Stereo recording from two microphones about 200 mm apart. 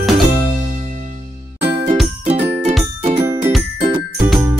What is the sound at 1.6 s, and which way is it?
Jingle, 25° right (ahead or behind).